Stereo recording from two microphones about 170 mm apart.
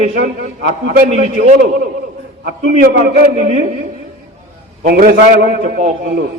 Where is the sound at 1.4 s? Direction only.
45° right (ahead or behind).